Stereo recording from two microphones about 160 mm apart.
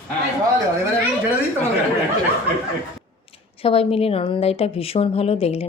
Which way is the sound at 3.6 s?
35° left (ahead or behind).